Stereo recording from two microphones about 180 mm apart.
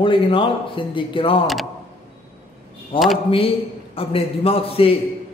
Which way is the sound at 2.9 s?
30° left (ahead or behind).